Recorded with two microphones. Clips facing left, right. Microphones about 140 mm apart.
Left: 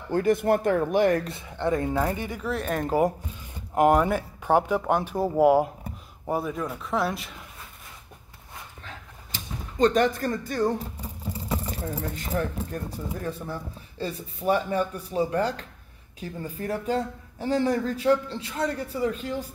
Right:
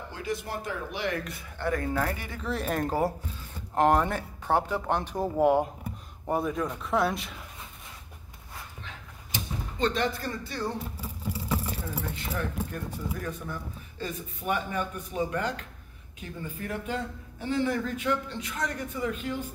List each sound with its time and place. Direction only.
0.1 s speech: 55° left (ahead or behind)
1.2 s speech: 25° left (ahead or behind)
2.4 s speech: centre (ahead or behind)
3.7 s speech: 10° left (ahead or behind)
9.8 s speech: 45° left (ahead or behind)
12.1 s speech: 40° left (ahead or behind)